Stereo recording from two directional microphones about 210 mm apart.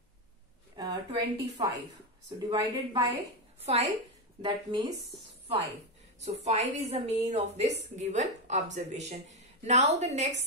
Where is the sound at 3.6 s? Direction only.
30° right (ahead or behind).